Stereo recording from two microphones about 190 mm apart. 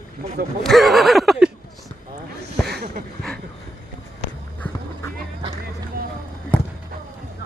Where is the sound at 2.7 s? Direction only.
60° right (ahead or behind).